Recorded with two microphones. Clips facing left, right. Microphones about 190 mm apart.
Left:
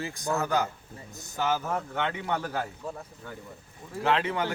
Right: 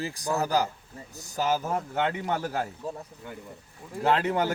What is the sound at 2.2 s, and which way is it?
Speech, 40° right (ahead or behind).